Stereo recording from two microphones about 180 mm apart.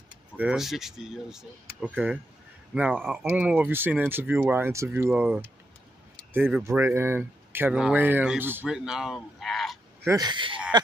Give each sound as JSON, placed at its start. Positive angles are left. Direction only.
{"t": 0.4, "sound": "speech", "side_deg": -5}
{"t": 10.0, "sound": "speech", "side_deg": -20}